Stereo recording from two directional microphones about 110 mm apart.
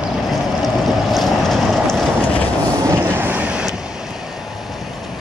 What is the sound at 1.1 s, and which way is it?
Vehicle, centre (ahead or behind).